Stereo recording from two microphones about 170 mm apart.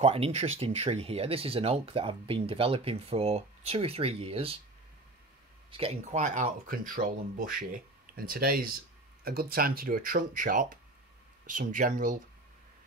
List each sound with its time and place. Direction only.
0.0 s speech: 35° right (ahead or behind)
5.7 s speech: 30° right (ahead or behind)
6.1 s speech: 45° right (ahead or behind)